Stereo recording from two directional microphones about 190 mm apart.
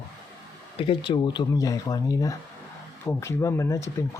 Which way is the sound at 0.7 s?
25° left (ahead or behind).